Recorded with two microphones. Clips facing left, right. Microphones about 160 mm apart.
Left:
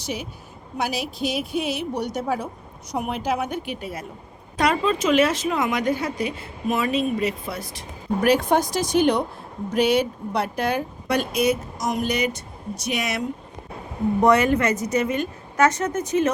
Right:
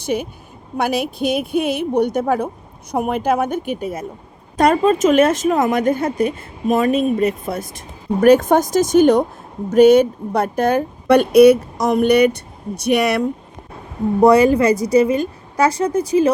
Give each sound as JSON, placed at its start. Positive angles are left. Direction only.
{"t": 0.0, "sound": "a woman's voice", "side_deg": -55}
{"t": 14.2, "sound": "a woman's voice", "side_deg": -35}